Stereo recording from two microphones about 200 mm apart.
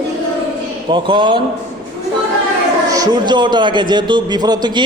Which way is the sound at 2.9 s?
20° right (ahead or behind).